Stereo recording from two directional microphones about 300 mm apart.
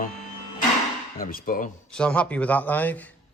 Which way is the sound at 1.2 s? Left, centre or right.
Left.